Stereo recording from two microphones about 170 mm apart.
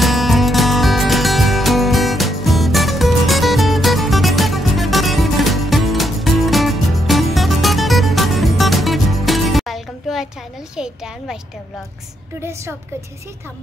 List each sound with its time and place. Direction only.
0.0 s music: centre (ahead or behind)
12.4 s a woman's voice: 15° right (ahead or behind)